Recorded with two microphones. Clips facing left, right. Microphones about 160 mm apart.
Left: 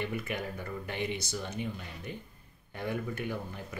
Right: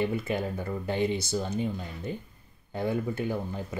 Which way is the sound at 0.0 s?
30° right (ahead or behind).